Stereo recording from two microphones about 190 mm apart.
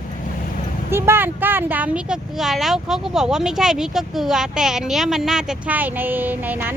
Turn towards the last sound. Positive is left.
turn(degrees=-10)  # may be behind; listen again after turning